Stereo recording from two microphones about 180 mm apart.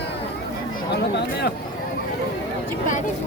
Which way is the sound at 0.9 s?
70° left (ahead or behind).